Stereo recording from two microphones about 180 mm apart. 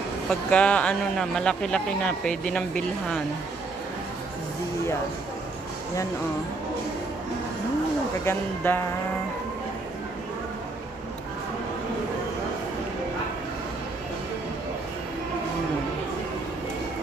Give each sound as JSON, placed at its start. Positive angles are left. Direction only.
{"t": 0.3, "sound": "speech", "side_deg": 5}
{"t": 8.3, "sound": "speech", "side_deg": 10}